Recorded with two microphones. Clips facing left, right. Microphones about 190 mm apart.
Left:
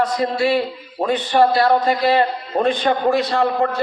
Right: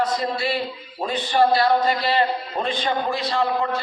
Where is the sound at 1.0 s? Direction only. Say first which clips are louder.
Left 4 dB; 50° left (ahead or behind).